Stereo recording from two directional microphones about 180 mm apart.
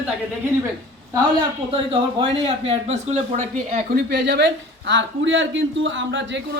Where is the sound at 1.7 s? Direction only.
30° right (ahead or behind).